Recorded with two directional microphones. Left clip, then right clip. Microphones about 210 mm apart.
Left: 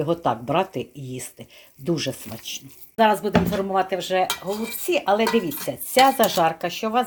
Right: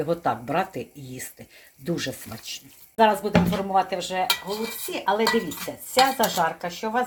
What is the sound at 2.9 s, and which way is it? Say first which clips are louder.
Speech: left 1 dB; 25° left (ahead or behind).